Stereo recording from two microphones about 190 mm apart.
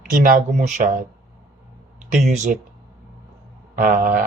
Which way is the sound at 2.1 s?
40° right (ahead or behind).